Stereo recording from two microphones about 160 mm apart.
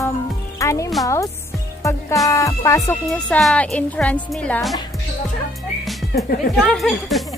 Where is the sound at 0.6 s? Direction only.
20° left (ahead or behind).